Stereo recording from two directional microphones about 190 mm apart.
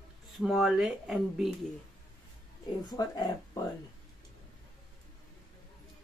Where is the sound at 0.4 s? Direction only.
Centre (ahead or behind).